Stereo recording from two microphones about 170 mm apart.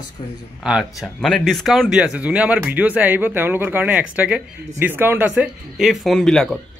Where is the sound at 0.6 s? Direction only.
Centre (ahead or behind).